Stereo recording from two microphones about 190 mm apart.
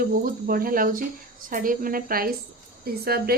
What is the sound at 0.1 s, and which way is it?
Speech, 50° right (ahead or behind).